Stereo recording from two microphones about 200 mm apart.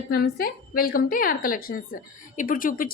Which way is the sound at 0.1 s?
50° left (ahead or behind).